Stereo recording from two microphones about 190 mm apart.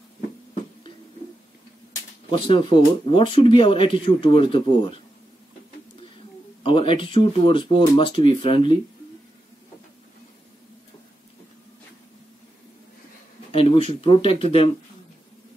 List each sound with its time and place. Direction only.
2.3 s speech: 25° left (ahead or behind)
6.6 s speech: 25° left (ahead or behind)
13.5 s speech: 30° left (ahead or behind)